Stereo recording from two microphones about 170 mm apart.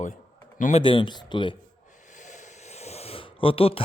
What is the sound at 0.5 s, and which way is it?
Speech, 50° left (ahead or behind).